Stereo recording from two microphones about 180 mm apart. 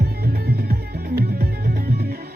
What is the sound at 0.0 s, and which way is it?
Music, 60° right (ahead or behind).